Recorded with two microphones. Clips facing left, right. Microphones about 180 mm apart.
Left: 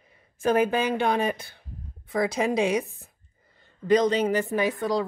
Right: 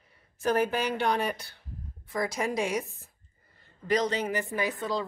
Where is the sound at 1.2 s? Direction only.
50° left (ahead or behind).